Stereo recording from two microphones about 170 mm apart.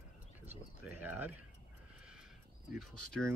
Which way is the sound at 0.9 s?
10° right (ahead or behind).